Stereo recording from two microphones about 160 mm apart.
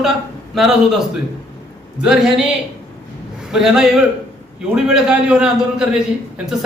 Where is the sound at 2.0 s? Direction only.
5° right (ahead or behind).